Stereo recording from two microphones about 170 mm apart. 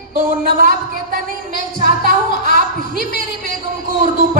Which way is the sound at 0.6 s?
55° right (ahead or behind).